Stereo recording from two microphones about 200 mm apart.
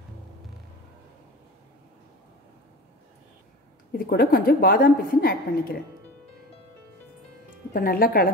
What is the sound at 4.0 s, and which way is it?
A woman's voice, 50° left (ahead or behind).